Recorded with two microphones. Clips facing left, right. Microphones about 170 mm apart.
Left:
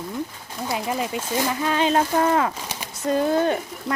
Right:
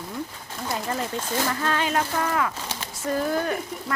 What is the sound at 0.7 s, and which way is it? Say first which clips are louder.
Speech: left 3 dB; 10° left (ahead or behind).